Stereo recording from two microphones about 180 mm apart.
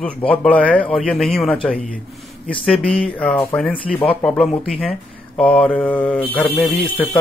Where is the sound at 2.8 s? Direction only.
30° left (ahead or behind).